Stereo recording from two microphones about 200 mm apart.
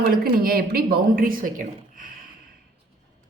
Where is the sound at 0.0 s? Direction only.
50° right (ahead or behind).